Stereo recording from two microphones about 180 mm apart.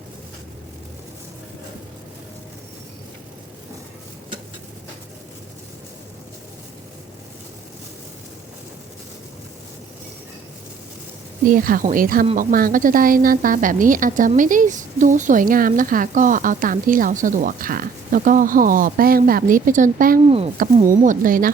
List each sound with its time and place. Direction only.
11.4 s a woman's voice: 50° right (ahead or behind)
20.2 s speech: 35° right (ahead or behind)
20.8 s a woman's voice: 45° right (ahead or behind)